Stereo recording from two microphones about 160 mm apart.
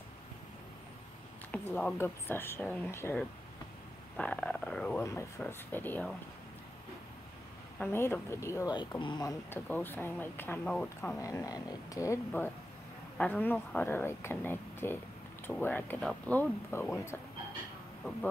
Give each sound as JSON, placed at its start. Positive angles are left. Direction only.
{"t": 1.5, "sound": "speech", "side_deg": 5}
{"t": 7.8, "sound": "speech", "side_deg": 15}
{"t": 9.7, "sound": "speech", "side_deg": 10}
{"t": 11.0, "sound": "speech", "side_deg": 15}
{"t": 13.2, "sound": "speech", "side_deg": 10}